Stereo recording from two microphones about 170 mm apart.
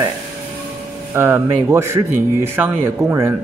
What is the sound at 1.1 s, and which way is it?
Speech, 15° right (ahead or behind).